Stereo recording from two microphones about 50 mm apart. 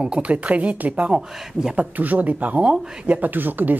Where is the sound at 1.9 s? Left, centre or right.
Right.